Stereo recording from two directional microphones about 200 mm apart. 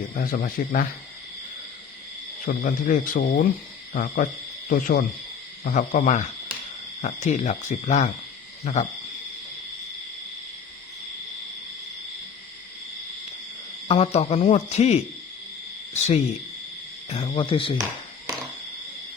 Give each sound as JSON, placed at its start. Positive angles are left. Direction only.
{"t": 0.2, "sound": "speech", "side_deg": 45}
{"t": 2.5, "sound": "hoot", "side_deg": 40}
{"t": 3.9, "sound": "speech", "side_deg": 45}
{"t": 5.6, "sound": "hoot", "side_deg": 40}
{"t": 13.8, "sound": "hoot", "side_deg": 30}
{"t": 17.1, "sound": "speech", "side_deg": 30}